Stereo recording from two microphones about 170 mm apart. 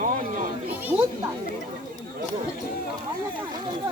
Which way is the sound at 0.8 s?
10° right (ahead or behind).